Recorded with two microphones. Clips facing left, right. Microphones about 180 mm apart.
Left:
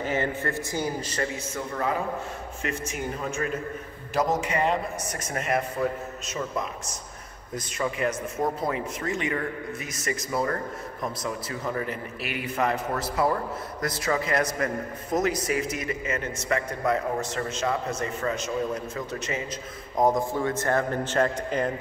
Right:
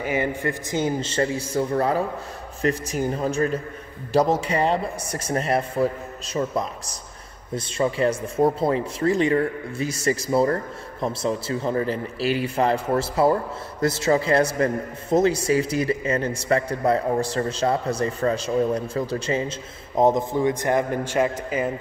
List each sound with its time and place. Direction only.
0.0 s a man's voice: 10° right (ahead or behind)